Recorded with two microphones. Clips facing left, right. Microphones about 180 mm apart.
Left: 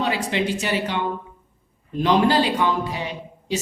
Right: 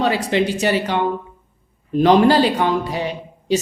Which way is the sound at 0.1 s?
40° right (ahead or behind).